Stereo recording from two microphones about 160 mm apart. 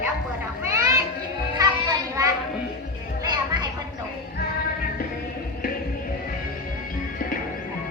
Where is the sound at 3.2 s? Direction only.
25° right (ahead or behind).